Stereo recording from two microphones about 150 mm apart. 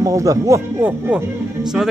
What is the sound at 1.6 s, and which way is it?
Speech, 5° right (ahead or behind).